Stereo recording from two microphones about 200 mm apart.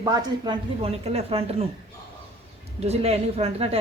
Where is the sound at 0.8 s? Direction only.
30° right (ahead or behind).